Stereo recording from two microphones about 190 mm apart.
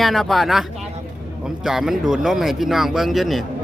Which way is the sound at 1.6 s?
Centre (ahead or behind).